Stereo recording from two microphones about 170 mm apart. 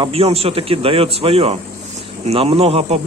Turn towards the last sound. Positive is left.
turn(degrees=-35)  # may be behind; listen again after turning